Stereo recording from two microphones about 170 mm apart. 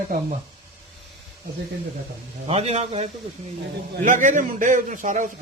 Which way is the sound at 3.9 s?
50° right (ahead or behind).